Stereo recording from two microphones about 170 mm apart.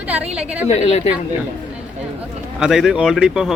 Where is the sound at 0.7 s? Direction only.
40° left (ahead or behind).